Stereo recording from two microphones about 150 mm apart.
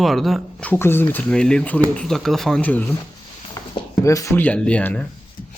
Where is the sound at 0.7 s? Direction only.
15° left (ahead or behind).